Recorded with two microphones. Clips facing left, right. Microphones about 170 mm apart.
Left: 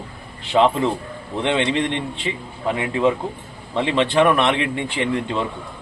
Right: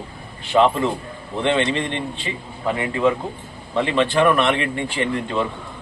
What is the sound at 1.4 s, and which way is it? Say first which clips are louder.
Speech: even; 15° left (ahead or behind).